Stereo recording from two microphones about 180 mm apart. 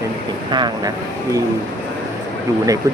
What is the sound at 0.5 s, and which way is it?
Speech, 25° right (ahead or behind).